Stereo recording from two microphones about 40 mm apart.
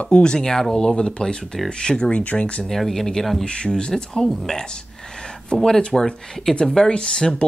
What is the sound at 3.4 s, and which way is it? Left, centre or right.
Speech, left.